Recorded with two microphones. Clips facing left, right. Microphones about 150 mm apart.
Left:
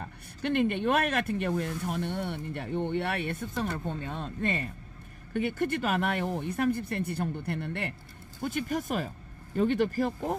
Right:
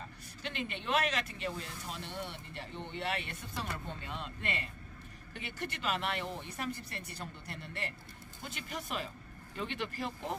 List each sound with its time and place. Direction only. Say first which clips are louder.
0.0 s speech: left 10 dB; 55° left (ahead or behind)